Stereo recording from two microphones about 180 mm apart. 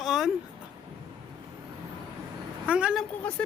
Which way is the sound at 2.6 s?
5° right (ahead or behind).